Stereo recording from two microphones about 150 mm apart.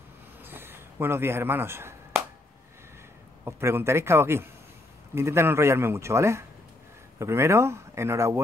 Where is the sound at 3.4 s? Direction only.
15° right (ahead or behind).